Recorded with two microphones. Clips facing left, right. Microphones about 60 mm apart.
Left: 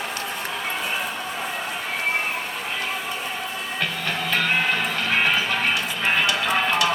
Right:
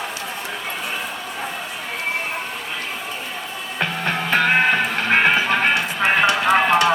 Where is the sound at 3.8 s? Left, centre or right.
Right.